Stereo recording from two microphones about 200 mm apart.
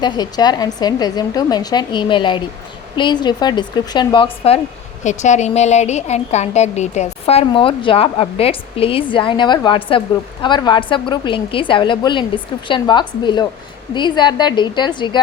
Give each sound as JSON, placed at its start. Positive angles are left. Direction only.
{"t": 0.0, "sound": "a woman's voice", "side_deg": 20}